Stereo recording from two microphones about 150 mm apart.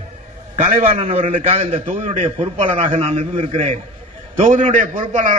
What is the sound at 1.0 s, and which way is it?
A man's voice, 40° right (ahead or behind).